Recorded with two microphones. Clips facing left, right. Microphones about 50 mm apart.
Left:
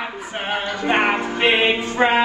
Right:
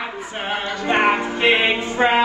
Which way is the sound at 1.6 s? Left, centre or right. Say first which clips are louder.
Even; centre.